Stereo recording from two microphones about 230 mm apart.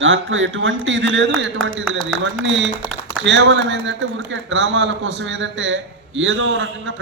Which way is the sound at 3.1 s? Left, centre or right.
Right.